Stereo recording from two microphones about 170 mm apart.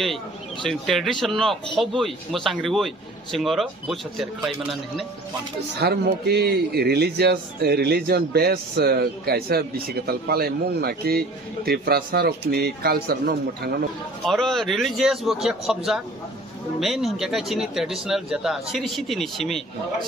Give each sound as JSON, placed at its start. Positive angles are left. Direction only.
{"t": 0.7, "sound": "speech", "side_deg": 0}
{"t": 5.8, "sound": "a man's voice", "side_deg": -75}
{"t": 14.2, "sound": "speech", "side_deg": 0}